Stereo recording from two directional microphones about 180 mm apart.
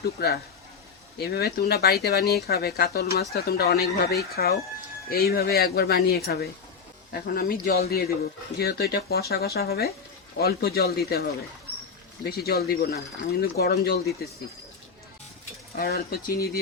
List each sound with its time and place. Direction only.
0.0 s speech: 60° left (ahead or behind)
15.7 s speech: 55° left (ahead or behind)